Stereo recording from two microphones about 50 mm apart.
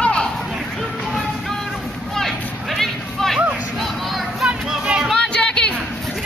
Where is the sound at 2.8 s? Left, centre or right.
Centre.